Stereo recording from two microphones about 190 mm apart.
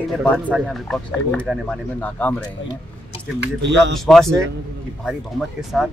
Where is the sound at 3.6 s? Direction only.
70° right (ahead or behind).